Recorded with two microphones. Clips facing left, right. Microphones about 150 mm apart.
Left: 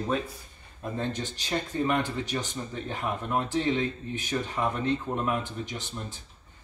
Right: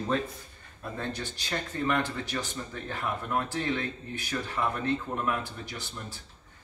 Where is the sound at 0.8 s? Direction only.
15° left (ahead or behind).